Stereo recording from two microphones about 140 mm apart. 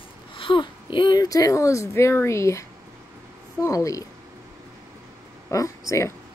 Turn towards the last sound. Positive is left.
turn(degrees=20)  # may be behind; listen again after turning